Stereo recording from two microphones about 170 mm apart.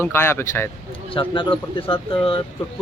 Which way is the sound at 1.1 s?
30° left (ahead or behind).